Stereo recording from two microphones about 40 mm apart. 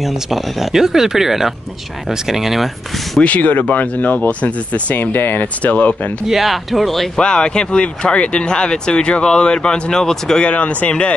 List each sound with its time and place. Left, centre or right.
0.0 s speech: centre
3.3 s speech: left
4.9 s speech: left
6.2 s speech: centre
7.2 s speech: left
10.4 s speech: left